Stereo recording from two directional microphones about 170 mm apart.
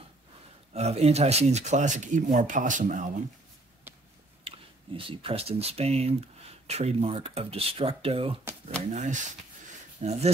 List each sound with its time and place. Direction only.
0.7 s speech: 40° right (ahead or behind)
3.9 s a sound: 10° right (ahead or behind)
4.5 s speech: 30° right (ahead or behind)
8.9 s speech: 45° right (ahead or behind)